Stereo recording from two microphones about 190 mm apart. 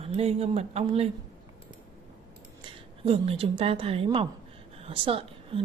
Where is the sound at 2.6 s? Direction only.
30° right (ahead or behind).